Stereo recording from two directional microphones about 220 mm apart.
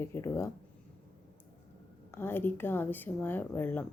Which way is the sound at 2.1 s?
10° left (ahead or behind).